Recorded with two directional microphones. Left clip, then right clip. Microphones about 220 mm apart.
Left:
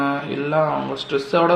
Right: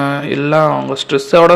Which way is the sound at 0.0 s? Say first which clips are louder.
Right 6 dB; 45° right (ahead or behind).